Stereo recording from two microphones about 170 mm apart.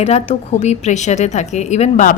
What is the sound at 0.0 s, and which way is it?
A woman's voice, 40° left (ahead or behind).